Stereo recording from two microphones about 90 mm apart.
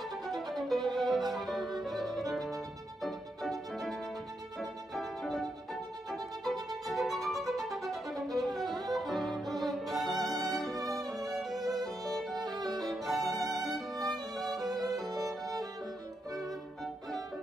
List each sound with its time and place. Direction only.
0.5 s music: centre (ahead or behind)
8.6 s music: 50° right (ahead or behind)
8.9 s violin: centre (ahead or behind)
11.1 s music: centre (ahead or behind)
12.0 s violin: centre (ahead or behind)
16.3 s violin: centre (ahead or behind)